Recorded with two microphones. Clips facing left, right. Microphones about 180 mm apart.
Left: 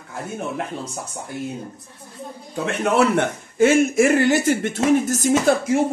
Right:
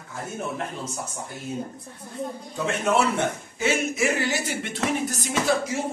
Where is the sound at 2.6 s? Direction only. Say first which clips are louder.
Left 4 dB; 65° left (ahead or behind).